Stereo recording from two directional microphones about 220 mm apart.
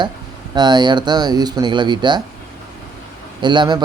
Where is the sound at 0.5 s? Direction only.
20° right (ahead or behind).